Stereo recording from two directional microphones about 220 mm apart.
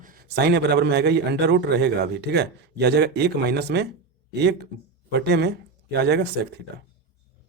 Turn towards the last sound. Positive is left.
turn(degrees=-50)  # may be behind; listen again after turning